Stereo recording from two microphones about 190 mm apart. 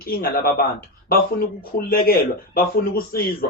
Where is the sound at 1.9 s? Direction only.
50° left (ahead or behind).